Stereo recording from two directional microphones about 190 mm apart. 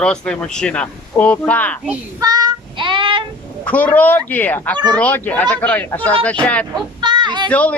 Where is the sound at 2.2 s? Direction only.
20° right (ahead or behind).